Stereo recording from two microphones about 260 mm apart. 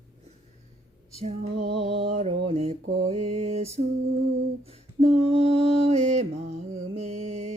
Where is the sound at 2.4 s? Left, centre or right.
Right.